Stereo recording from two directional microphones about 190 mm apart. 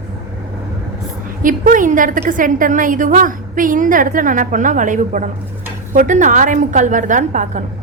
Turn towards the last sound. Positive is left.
turn(degrees=-40)  # may be behind; listen again after turning